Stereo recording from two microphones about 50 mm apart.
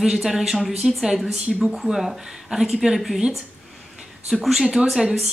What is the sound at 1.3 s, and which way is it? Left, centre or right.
Speech, centre.